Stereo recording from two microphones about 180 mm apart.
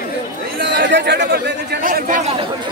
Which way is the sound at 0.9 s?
70° right (ahead or behind).